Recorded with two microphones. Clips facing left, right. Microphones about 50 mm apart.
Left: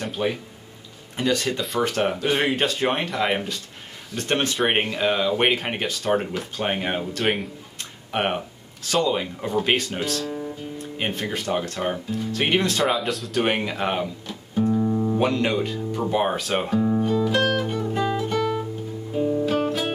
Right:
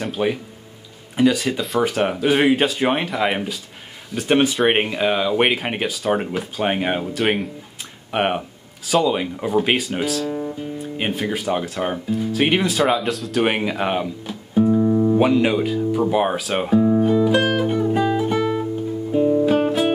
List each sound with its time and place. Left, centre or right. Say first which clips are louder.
0.0 s speech: right 4 dB; centre
13.4 s music: right 3 dB; centre
19.1 s guitar: right 6 dB; centre